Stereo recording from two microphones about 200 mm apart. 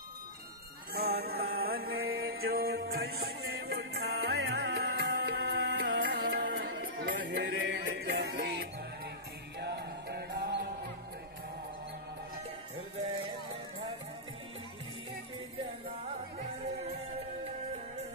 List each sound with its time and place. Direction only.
0.9 s mantra: 50° right (ahead or behind)
3.1 s music: 50° right (ahead or behind)